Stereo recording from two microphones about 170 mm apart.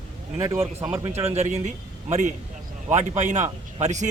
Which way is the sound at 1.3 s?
40° right (ahead or behind).